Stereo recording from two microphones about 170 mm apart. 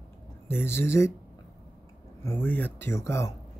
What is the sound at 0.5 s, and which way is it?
Speech, 15° left (ahead or behind).